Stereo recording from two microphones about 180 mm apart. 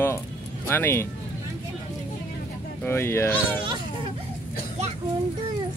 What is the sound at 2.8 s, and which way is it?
Speech, 15° left (ahead or behind).